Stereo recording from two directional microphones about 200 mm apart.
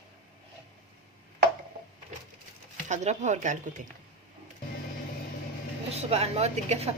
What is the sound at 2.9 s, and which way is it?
Speech, 35° right (ahead or behind).